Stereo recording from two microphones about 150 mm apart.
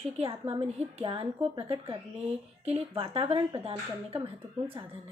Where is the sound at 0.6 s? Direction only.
45° right (ahead or behind).